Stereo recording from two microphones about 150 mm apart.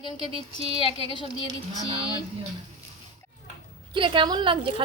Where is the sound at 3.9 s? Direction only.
35° right (ahead or behind).